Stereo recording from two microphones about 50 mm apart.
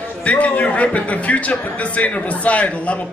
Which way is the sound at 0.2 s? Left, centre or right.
Left.